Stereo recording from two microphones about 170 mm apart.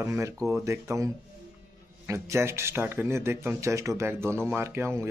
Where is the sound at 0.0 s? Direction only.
15° right (ahead or behind).